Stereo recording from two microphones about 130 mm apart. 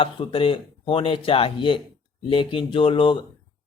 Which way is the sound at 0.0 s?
45° left (ahead or behind).